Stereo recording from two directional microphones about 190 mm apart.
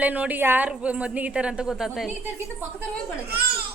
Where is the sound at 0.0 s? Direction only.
10° right (ahead or behind).